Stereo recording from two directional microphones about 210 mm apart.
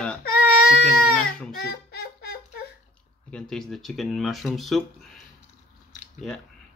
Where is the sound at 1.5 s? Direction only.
50° left (ahead or behind).